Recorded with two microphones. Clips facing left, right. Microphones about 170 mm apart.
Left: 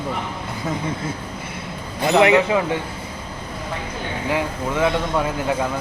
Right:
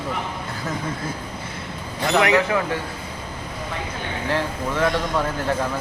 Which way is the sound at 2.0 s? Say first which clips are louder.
Left 4 dB; 20° left (ahead or behind).